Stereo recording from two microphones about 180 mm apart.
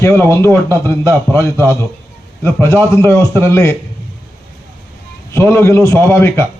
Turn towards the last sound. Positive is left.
turn(degrees=15)  # may be behind; listen again after turning